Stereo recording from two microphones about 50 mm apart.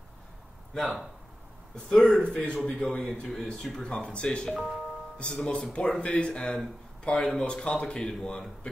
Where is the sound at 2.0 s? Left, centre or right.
Left.